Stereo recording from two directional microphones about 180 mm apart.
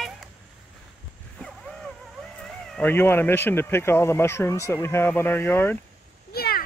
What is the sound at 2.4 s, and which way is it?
Speech, 5° left (ahead or behind).